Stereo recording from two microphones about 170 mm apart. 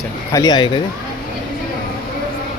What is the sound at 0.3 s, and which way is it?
Speech, 25° left (ahead or behind).